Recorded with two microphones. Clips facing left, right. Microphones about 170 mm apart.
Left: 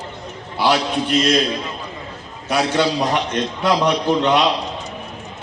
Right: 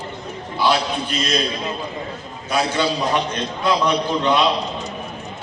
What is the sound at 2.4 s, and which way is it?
A man's voice, 70° left (ahead or behind).